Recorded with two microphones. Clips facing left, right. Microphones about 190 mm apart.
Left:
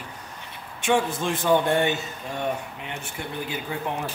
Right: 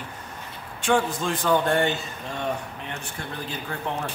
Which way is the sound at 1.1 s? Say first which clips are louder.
Left 1 dB; 25° left (ahead or behind).